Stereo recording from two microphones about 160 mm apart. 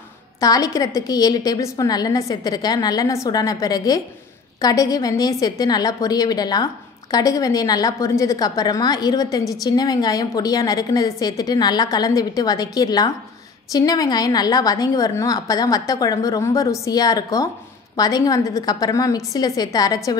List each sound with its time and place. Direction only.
0.4 s a woman's voice: 20° left (ahead or behind)